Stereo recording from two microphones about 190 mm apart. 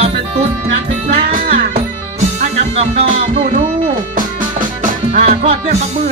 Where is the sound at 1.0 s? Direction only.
35° right (ahead or behind).